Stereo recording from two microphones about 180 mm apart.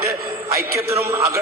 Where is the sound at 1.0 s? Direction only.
20° right (ahead or behind).